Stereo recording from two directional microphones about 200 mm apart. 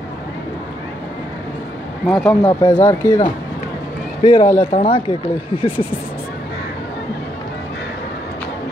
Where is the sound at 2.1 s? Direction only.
Centre (ahead or behind).